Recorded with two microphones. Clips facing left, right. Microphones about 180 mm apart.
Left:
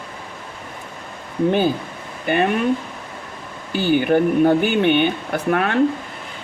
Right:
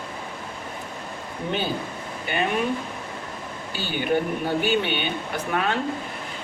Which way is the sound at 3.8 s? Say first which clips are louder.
Left 8 dB; 50° left (ahead or behind).